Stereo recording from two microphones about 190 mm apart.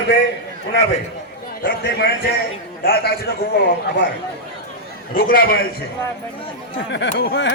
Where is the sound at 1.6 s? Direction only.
55° left (ahead or behind).